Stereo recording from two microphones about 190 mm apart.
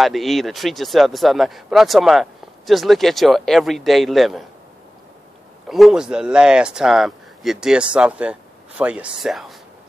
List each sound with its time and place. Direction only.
0.0 s speech: centre (ahead or behind)
5.7 s speech: centre (ahead or behind)